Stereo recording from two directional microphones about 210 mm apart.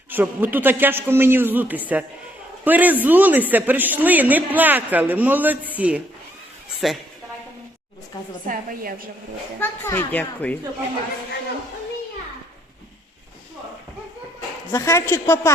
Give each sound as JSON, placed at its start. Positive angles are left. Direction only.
{"t": 0.1, "sound": "a woman's voice", "side_deg": -10}
{"t": 8.4, "sound": "a woman's voice", "side_deg": -45}
{"t": 9.6, "sound": "speech", "side_deg": 10}
{"t": 14.7, "sound": "speech", "side_deg": 15}